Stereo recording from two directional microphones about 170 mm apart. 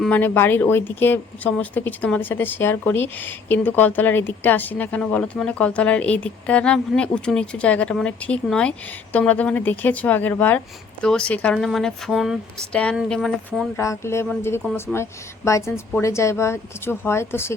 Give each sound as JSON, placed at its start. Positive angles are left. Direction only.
{"t": 0.0, "sound": "speech", "side_deg": 10}
{"t": 13.7, "sound": "speech", "side_deg": 15}